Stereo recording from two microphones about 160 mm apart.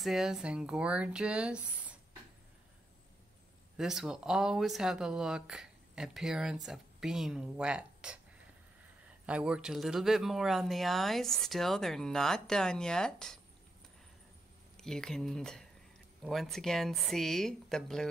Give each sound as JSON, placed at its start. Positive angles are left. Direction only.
{"t": 0.0, "sound": "speech", "side_deg": 0}
{"t": 3.7, "sound": "speech", "side_deg": -5}
{"t": 9.2, "sound": "speech", "side_deg": -5}
{"t": 14.8, "sound": "speech", "side_deg": 5}